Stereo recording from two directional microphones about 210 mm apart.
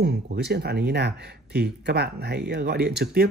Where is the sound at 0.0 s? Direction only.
50° right (ahead or behind).